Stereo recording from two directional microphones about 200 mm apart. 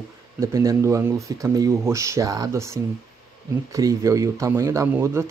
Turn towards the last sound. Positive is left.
turn(degrees=-15)  # may be behind; listen again after turning